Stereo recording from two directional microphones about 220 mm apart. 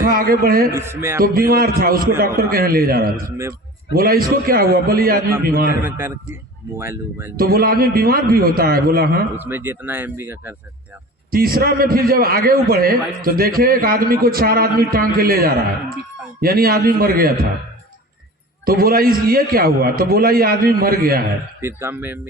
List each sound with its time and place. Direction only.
0.0 s a man's voice: 40° right (ahead or behind)
0.7 s speech: 10° right (ahead or behind)
1.2 s a man's voice: 40° right (ahead or behind)
5.8 s speech: 10° right (ahead or behind)
7.3 s a man's voice: 45° right (ahead or behind)
9.3 s speech: 10° right (ahead or behind)
11.3 s a man's voice: 40° right (ahead or behind)
18.6 s a man's voice: 40° right (ahead or behind)
21.6 s speech: 10° right (ahead or behind)